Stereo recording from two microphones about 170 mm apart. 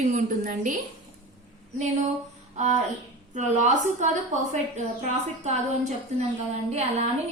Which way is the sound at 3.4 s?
45° right (ahead or behind).